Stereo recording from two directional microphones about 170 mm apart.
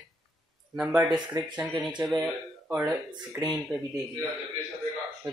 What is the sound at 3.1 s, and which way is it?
Speech, 25° right (ahead or behind).